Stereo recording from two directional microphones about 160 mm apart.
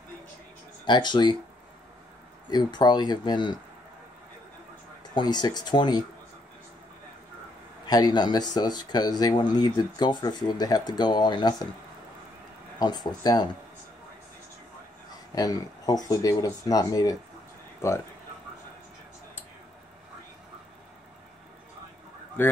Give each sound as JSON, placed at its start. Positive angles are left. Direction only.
{"t": 0.8, "sound": "speech", "side_deg": 30}
{"t": 2.5, "sound": "speech", "side_deg": 25}
{"t": 5.0, "sound": "speech", "side_deg": 25}
{"t": 7.8, "sound": "speech", "side_deg": 25}
{"t": 12.7, "sound": "speech", "side_deg": 25}
{"t": 15.3, "sound": "speech", "side_deg": 20}
{"t": 22.4, "sound": "goose", "side_deg": 10}